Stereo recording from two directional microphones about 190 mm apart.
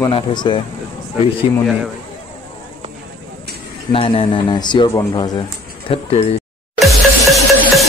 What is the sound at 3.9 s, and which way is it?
Speech, 30° left (ahead or behind).